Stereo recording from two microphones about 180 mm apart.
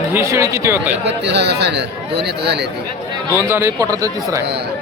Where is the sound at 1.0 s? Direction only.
70° right (ahead or behind).